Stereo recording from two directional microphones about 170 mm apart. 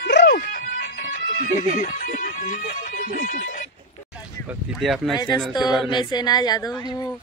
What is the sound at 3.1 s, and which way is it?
Speech, 50° left (ahead or behind).